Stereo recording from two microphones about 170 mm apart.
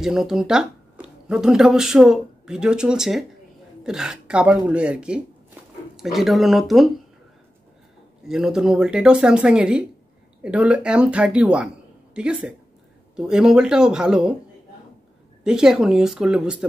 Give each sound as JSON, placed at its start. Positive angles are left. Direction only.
{"t": 0.0, "sound": "speech", "side_deg": 0}
{"t": 8.2, "sound": "speech", "side_deg": -5}
{"t": 15.4, "sound": "speech", "side_deg": -5}